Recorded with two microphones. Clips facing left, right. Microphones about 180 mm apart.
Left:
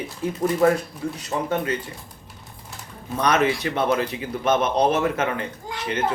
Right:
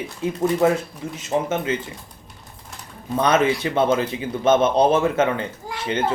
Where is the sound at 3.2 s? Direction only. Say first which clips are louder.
Right 2 dB; 25° right (ahead or behind).